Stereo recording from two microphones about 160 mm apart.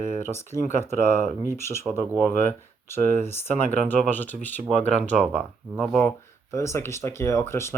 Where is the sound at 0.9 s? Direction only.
55° right (ahead or behind).